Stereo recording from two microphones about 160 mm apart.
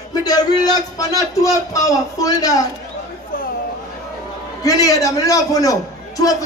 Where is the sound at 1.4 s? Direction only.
20° left (ahead or behind).